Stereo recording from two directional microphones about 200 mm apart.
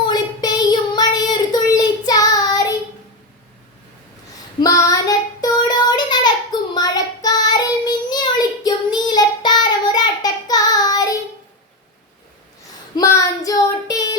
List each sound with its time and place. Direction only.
0.0 s child singing: 20° left (ahead or behind)
4.6 s child singing: 15° left (ahead or behind)
13.0 s child singing: 15° left (ahead or behind)